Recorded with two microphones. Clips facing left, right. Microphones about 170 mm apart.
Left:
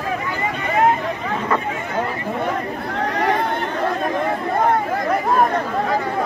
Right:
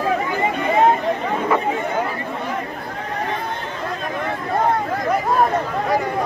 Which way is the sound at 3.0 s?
80° left.